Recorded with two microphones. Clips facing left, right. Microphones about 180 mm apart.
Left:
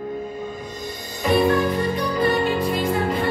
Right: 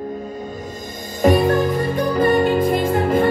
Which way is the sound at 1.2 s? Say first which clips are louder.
Right 3 dB; 45° right (ahead or behind).